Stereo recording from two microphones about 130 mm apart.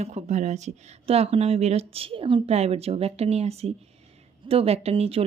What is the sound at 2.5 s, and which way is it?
A woman's voice, 55° right (ahead or behind).